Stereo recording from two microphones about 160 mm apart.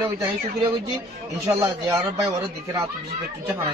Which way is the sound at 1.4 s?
20° right (ahead or behind).